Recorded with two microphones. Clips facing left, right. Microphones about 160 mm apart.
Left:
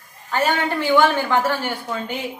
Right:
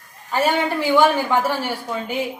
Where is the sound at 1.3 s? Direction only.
10° right (ahead or behind).